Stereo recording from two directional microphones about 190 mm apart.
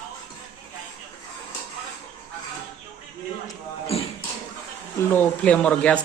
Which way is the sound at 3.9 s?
30° left (ahead or behind).